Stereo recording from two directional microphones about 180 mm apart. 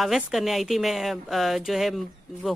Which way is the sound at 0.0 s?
Centre (ahead or behind).